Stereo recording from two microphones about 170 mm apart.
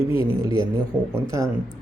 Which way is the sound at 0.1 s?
30° left (ahead or behind).